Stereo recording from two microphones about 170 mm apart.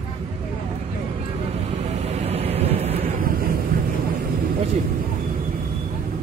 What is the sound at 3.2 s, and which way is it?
Thunder, 60° right (ahead or behind).